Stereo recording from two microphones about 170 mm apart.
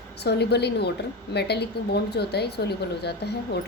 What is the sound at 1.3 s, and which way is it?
Speech, 75° left (ahead or behind).